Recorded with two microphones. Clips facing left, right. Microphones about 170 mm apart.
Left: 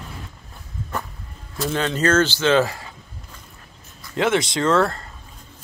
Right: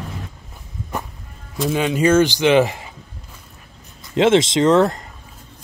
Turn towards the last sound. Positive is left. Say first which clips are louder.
# right 5 dB
turn(degrees=-20)  # may be behind; listen again after turning